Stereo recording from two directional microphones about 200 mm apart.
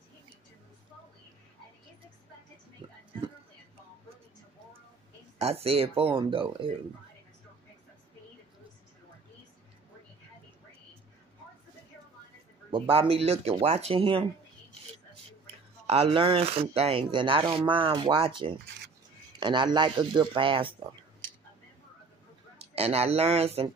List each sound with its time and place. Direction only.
2.8 s a sound: 25° right (ahead or behind)
5.4 s speech: 30° right (ahead or behind)
12.7 s speech: 30° right (ahead or behind)
15.9 s speech: 25° right (ahead or behind)
22.6 s speech: 30° right (ahead or behind)